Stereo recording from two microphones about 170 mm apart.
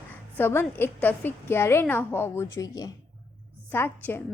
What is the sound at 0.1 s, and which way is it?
A woman's voice, 10° left (ahead or behind).